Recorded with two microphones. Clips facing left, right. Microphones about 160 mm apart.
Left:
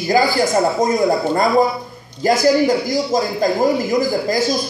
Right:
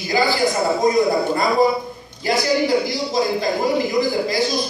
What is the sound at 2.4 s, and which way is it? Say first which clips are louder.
Speech: left 2 dB; 45° left (ahead or behind).